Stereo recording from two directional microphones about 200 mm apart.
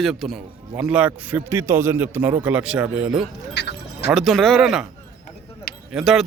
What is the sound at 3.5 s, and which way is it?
Speech, 60° left (ahead or behind).